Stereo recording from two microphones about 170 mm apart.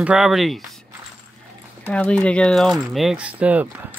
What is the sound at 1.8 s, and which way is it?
Speech, 5° left (ahead or behind).